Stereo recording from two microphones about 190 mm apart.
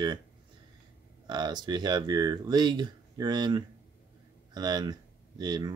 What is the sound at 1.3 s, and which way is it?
Speech, 20° right (ahead or behind).